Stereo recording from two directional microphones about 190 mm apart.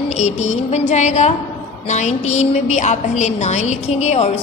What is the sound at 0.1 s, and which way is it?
A woman's voice, 35° left (ahead or behind).